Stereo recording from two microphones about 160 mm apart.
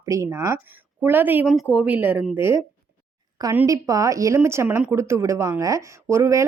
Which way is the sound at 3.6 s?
20° right (ahead or behind).